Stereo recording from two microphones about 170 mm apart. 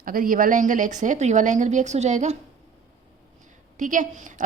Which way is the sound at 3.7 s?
50° right (ahead or behind).